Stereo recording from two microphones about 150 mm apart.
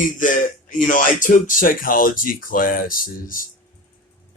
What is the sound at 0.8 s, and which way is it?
A man's voice, 60° left (ahead or behind).